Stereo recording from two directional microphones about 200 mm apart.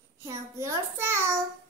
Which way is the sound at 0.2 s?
15° right (ahead or behind).